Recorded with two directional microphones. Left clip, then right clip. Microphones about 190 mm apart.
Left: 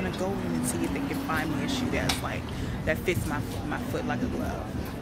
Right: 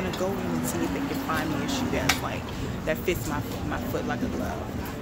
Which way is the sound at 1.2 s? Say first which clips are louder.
Right 1 dB; 5° right (ahead or behind).